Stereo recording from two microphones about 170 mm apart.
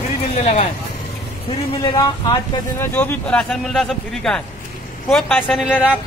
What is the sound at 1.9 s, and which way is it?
Speech, 20° left (ahead or behind).